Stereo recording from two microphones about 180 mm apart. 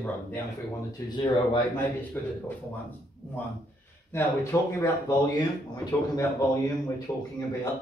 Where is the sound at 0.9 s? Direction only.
25° left (ahead or behind).